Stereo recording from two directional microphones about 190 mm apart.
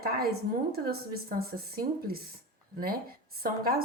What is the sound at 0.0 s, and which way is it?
A woman's voice, 55° right (ahead or behind).